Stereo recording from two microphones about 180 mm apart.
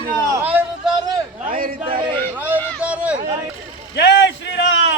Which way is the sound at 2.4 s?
10° right (ahead or behind).